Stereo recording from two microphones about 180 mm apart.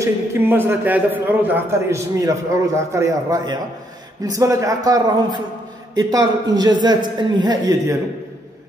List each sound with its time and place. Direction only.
0.0 s a man's voice: 15° right (ahead or behind)